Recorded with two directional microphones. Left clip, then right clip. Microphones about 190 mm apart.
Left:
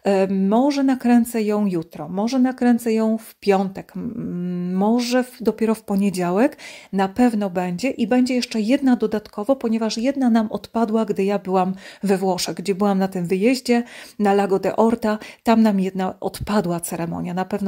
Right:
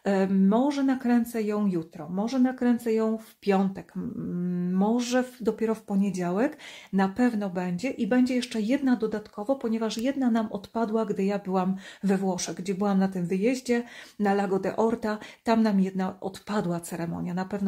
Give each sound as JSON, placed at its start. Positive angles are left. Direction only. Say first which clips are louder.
{"t": 0.0, "sound": "speech", "louder": "left 7 dB", "side_deg": 35}